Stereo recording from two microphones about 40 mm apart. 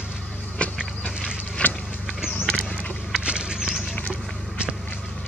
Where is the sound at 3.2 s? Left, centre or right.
Right.